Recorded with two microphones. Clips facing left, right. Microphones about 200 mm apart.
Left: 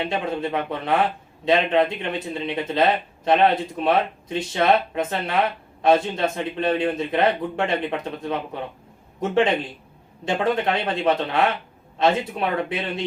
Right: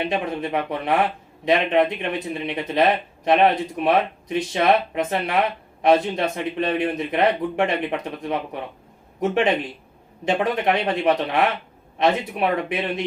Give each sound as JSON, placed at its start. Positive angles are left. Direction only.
{"t": 0.0, "sound": "speech", "side_deg": -20}
{"t": 10.2, "sound": "speech", "side_deg": -20}